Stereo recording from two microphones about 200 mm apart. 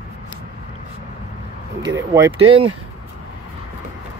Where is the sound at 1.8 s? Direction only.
15° right (ahead or behind).